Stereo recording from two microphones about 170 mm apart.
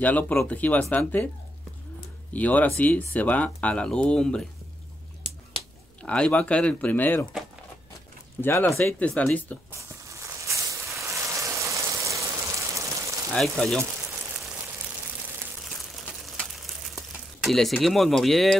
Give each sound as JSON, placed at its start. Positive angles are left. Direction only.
{"t": 0.0, "sound": "speech", "side_deg": 10}
{"t": 2.3, "sound": "speech", "side_deg": 10}
{"t": 6.0, "sound": "speech", "side_deg": 5}
{"t": 8.4, "sound": "speech", "side_deg": 15}
{"t": 9.7, "sound": "a sound", "side_deg": -15}
{"t": 13.3, "sound": "speech", "side_deg": 5}
{"t": 15.6, "sound": "crumpling", "side_deg": 0}
{"t": 17.4, "sound": "speech", "side_deg": 0}